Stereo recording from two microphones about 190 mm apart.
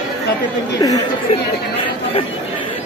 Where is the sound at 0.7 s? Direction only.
20° left (ahead or behind).